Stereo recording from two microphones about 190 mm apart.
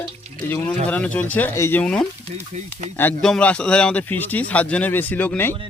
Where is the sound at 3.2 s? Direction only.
5° left (ahead or behind).